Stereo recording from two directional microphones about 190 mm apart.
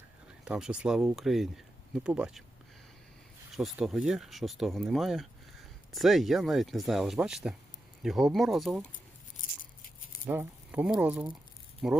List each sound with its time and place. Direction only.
0.4 s speech: 5° right (ahead or behind)
3.5 s speech: centre (ahead or behind)
10.2 s speech: 10° right (ahead or behind)